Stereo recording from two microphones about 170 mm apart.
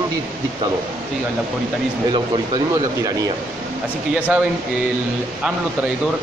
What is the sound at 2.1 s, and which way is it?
Speech, 25° right (ahead or behind).